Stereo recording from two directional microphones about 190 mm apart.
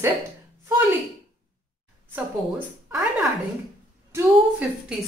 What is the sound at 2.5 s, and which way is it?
A woman's voice, 5° right (ahead or behind).